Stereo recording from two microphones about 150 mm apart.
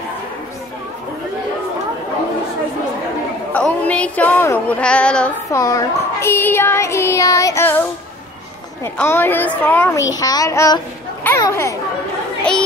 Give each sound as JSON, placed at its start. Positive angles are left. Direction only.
{"t": 3.5, "sound": "female singing", "side_deg": 10}
{"t": 5.5, "sound": "child singing", "side_deg": 25}
{"t": 8.8, "sound": "child singing", "side_deg": 15}
{"t": 10.0, "sound": "a child's voice", "side_deg": 25}
{"t": 11.2, "sound": "chatter", "side_deg": 20}